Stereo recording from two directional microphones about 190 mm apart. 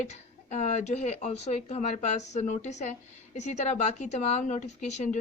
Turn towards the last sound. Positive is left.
turn(degrees=40)  # may be behind; listen again after turning